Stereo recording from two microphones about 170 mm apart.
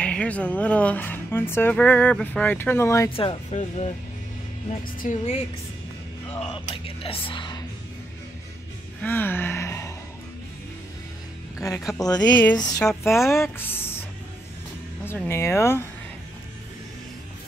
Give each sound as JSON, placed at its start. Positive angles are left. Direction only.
{"t": 0.0, "sound": "speech", "side_deg": 5}
{"t": 3.1, "sound": "speech", "side_deg": 35}
{"t": 4.6, "sound": "music", "side_deg": 50}
{"t": 6.4, "sound": "speech", "side_deg": 35}
{"t": 9.0, "sound": "speech", "side_deg": 10}
{"t": 11.5, "sound": "speech", "side_deg": 20}
{"t": 15.0, "sound": "speech", "side_deg": 15}